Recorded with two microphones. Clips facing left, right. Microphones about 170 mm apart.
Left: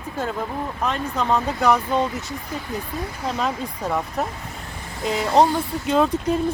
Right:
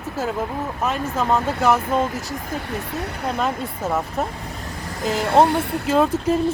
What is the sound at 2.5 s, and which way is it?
Speech, 70° right (ahead or behind).